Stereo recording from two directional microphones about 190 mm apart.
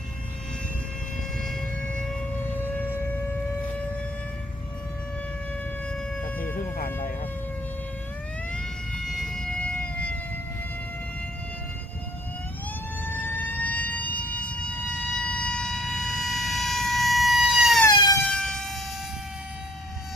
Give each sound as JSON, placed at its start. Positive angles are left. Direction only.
{"t": 5.9, "sound": "siren", "side_deg": 5}
{"t": 6.7, "sound": "a sound", "side_deg": 50}
{"t": 9.0, "sound": "siren", "side_deg": 0}
{"t": 13.1, "sound": "vehicle", "side_deg": 10}
{"t": 17.8, "sound": "emergency vehicle", "side_deg": 20}
{"t": 18.3, "sound": "air horn", "side_deg": 5}